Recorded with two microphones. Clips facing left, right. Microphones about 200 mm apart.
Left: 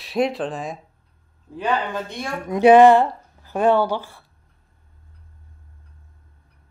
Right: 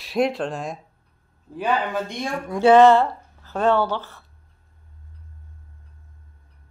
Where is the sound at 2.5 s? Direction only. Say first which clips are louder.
Left 2 dB; 15° left (ahead or behind).